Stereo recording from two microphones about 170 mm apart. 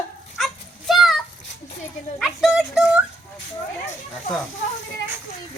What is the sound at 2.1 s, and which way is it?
Speech, centre (ahead or behind).